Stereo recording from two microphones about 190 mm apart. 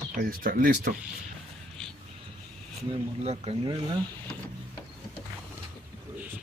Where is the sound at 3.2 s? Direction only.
35° right (ahead or behind).